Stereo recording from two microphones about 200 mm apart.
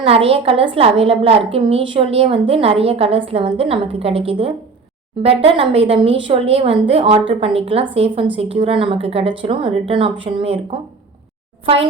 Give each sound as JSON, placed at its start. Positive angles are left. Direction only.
{"t": 0.0, "sound": "speech", "side_deg": -30}